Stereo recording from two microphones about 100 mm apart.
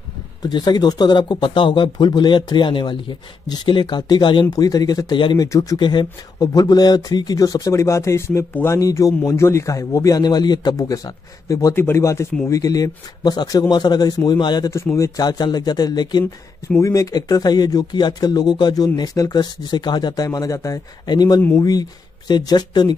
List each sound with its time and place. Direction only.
0.4 s speech: 45° left (ahead or behind)
5.4 s a man's voice: 35° left (ahead or behind)
5.8 s a man's voice: 50° left (ahead or behind)
16.8 s speech: 35° left (ahead or behind)
20.2 s a man's voice: 30° left (ahead or behind)
21.1 s a man's voice: 45° left (ahead or behind)